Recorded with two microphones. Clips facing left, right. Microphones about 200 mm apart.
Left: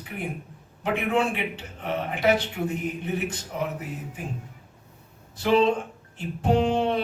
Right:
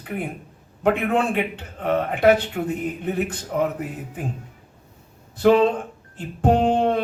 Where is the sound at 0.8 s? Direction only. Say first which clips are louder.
Right 4 dB; 55° right (ahead or behind).